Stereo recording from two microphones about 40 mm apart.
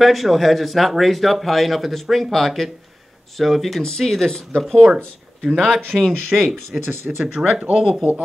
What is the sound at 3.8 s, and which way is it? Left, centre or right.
Speech, centre.